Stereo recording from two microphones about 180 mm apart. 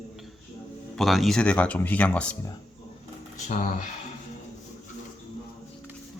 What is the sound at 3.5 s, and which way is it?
Speech, 45° left (ahead or behind).